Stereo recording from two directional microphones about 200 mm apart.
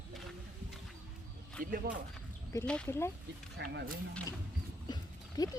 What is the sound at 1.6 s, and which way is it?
Speech, 45° right (ahead or behind).